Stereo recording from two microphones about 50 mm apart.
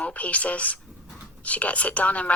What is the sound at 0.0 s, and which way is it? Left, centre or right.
Speech, left.